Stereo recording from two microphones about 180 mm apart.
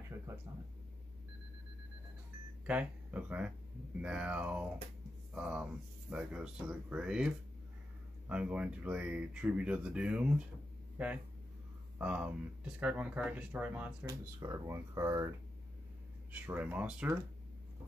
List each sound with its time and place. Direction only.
2.6 s speech: 10° right (ahead or behind)
14.0 s speech: 20° right (ahead or behind)